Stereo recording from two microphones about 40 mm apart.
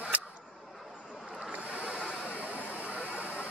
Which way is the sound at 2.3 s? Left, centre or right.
Right.